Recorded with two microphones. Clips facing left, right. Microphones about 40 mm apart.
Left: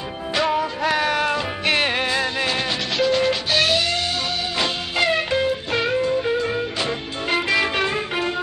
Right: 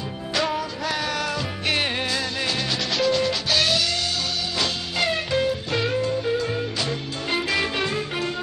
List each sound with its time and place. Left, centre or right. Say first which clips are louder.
0.3 s music: left 4 dB; left